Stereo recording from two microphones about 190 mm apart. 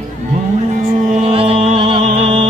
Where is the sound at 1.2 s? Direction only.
30° right (ahead or behind).